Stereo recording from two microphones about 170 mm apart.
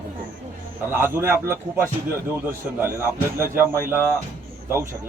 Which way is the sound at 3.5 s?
10° right (ahead or behind).